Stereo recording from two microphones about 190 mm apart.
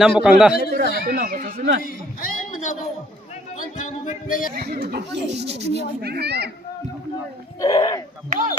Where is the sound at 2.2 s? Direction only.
40° left (ahead or behind).